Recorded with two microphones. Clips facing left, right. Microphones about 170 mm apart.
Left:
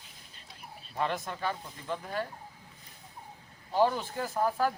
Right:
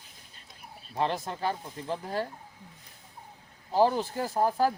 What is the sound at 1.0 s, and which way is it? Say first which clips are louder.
Speech: right 3 dB; 35° right (ahead or behind).